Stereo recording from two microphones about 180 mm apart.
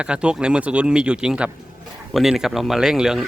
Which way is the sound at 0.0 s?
5° right (ahead or behind).